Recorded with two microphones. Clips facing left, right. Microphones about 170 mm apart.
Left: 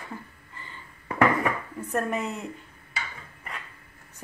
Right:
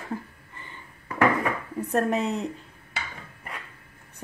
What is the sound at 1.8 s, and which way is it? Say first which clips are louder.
Speech: right 4 dB; 35° right (ahead or behind).